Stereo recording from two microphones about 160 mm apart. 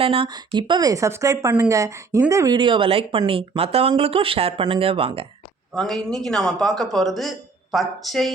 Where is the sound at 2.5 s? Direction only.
30° right (ahead or behind).